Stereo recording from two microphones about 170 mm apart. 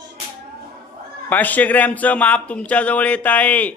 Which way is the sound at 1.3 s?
10° left (ahead or behind).